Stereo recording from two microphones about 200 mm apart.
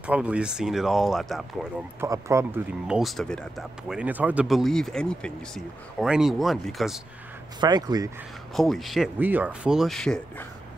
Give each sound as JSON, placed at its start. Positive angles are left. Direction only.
{"t": 0.0, "sound": "speech", "side_deg": -5}
{"t": 2.0, "sound": "speech", "side_deg": -15}
{"t": 2.9, "sound": "speech", "side_deg": 0}
{"t": 7.6, "sound": "speech", "side_deg": -20}
{"t": 8.5, "sound": "speech", "side_deg": 0}